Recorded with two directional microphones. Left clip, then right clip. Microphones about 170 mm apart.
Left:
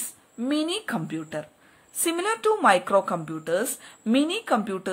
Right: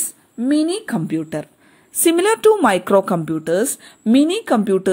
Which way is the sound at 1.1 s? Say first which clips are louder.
Right 9 dB; 30° right (ahead or behind).